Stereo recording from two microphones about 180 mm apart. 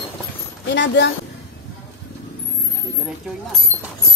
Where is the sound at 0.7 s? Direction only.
80° left.